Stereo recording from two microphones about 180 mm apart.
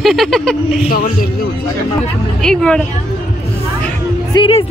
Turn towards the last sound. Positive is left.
turn(degrees=30)  # may be behind; listen again after turning